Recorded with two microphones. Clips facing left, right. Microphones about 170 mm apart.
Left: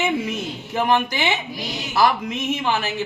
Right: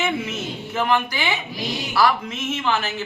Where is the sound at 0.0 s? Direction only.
15° left (ahead or behind).